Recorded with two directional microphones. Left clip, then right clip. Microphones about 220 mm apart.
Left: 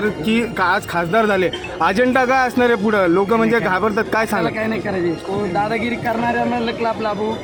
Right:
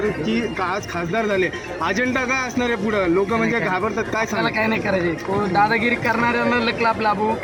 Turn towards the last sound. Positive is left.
turn(degrees=-10)  # may be behind; listen again after turning